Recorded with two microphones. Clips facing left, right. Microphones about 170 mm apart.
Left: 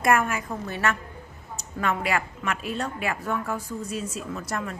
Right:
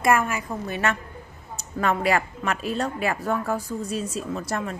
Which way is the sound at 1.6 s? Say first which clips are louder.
Right 3 dB; 35° right (ahead or behind).